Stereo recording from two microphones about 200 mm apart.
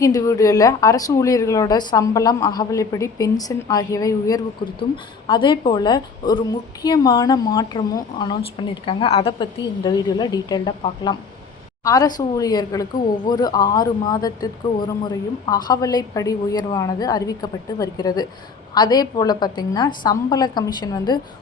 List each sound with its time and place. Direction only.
0.0 s a woman's voice: 15° left (ahead or behind)